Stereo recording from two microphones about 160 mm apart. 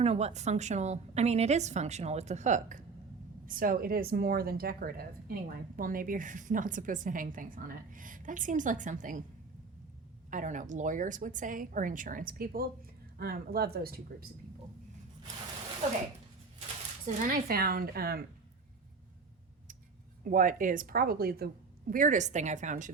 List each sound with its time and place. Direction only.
0.0 s a woman's voice: 40° right (ahead or behind)
10.2 s a woman's voice: 55° right (ahead or behind); by 14.3 s 70° right (ahead or behind)
17.2 s speech: 65° right (ahead or behind)
20.2 s a woman's voice: 55° right (ahead or behind)